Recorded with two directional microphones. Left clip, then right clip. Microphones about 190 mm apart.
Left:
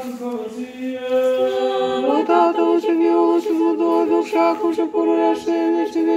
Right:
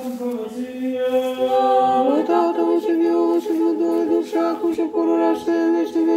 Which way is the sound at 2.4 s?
10° left (ahead or behind).